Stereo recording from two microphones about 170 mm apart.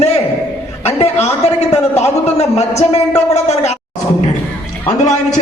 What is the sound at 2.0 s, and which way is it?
A man's voice, 40° left (ahead or behind).